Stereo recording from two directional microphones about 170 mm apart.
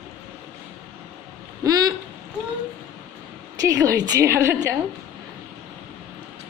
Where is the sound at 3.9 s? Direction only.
20° right (ahead or behind).